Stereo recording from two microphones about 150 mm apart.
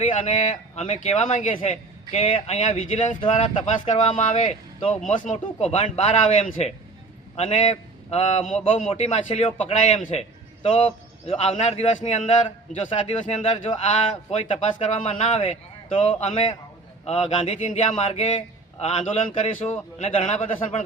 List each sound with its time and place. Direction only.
0.0 s a man's voice: 45° left (ahead or behind)
1.7 s a man's voice: 45° left (ahead or behind)
5.2 s a man's voice: 55° left (ahead or behind)
17.6 s a man's voice: 55° left (ahead or behind)